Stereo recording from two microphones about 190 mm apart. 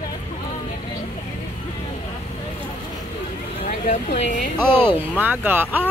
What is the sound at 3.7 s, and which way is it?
Speech, 40° left (ahead or behind).